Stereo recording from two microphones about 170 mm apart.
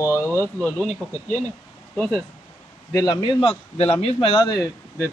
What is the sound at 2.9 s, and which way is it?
A man's voice, 25° left (ahead or behind).